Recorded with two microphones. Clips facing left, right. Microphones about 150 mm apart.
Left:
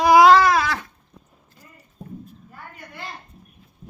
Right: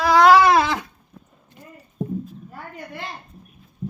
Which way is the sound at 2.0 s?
90° right.